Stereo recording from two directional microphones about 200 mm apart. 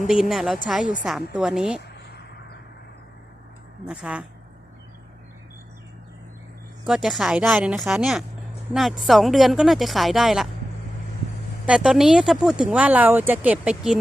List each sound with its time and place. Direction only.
0.1 s speech: centre (ahead or behind)
1.8 s a sound: 55° left (ahead or behind)
3.8 s speech: 5° right (ahead or behind)
6.8 s speech: centre (ahead or behind)
11.6 s speech: 5° right (ahead or behind)